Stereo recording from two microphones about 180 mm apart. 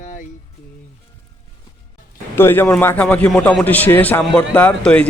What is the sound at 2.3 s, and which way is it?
A man's voice, 10° left (ahead or behind).